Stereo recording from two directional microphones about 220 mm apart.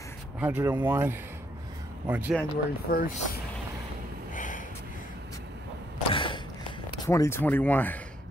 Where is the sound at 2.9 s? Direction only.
45° left (ahead or behind).